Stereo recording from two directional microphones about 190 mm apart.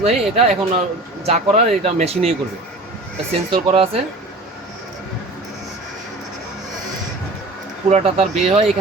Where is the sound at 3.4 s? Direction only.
30° right (ahead or behind).